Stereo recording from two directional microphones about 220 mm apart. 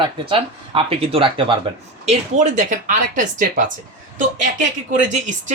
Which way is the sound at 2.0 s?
35° right (ahead or behind).